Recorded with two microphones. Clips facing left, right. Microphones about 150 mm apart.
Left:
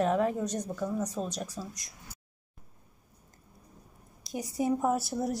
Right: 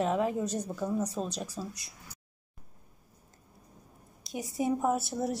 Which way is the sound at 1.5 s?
30° right (ahead or behind).